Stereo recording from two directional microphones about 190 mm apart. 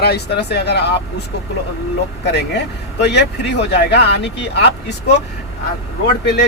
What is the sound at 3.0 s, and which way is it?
Speech, 60° left (ahead or behind).